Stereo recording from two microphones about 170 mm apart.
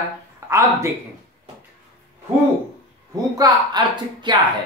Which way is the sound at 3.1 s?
25° right (ahead or behind).